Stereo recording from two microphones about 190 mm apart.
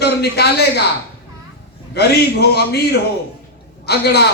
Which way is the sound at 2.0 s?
55° left (ahead or behind).